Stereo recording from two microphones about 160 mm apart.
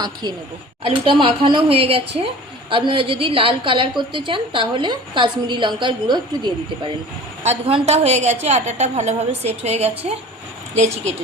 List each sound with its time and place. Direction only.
0.0 s a woman's voice: 25° right (ahead or behind)
7.4 s a woman's voice: 40° right (ahead or behind)